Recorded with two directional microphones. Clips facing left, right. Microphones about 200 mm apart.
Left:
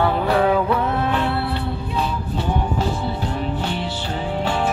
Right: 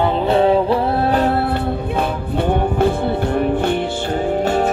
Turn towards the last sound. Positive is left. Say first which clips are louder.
# right 6 dB
turn(degrees=-45)  # may be behind; listen again after turning